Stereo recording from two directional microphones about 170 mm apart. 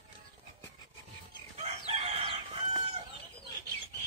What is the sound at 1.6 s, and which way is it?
Chicken, 35° right (ahead or behind).